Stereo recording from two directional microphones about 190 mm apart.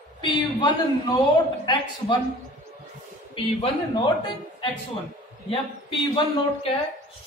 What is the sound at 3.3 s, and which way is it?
Speech, 25° left (ahead or behind).